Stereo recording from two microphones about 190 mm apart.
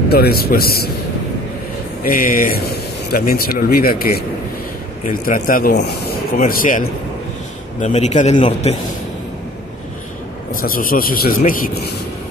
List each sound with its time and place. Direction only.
0.1 s speech: 55° left (ahead or behind)
2.0 s speech: 45° left (ahead or behind)
6.3 s speech: 45° left (ahead or behind)
7.8 s a man's voice: 35° left (ahead or behind)
10.5 s speech: 50° left (ahead or behind)